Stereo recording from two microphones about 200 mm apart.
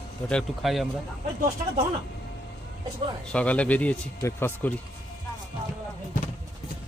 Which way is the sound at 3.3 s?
5° left (ahead or behind).